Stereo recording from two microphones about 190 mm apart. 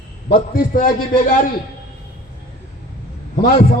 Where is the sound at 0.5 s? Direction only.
45° left (ahead or behind).